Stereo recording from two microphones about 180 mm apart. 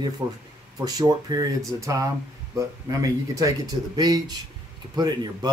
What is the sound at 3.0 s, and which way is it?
Speech, 20° right (ahead or behind).